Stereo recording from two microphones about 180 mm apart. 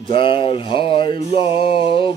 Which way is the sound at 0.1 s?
30° left (ahead or behind).